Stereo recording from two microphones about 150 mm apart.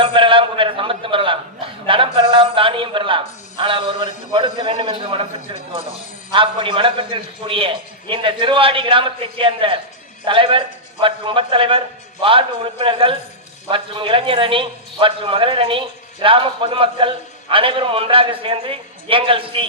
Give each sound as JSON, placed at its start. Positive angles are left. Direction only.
{"t": 0.0, "sound": "a sound", "side_deg": -35}
{"t": 3.6, "sound": "a man's voice", "side_deg": -35}
{"t": 6.3, "sound": "a man's voice", "side_deg": -35}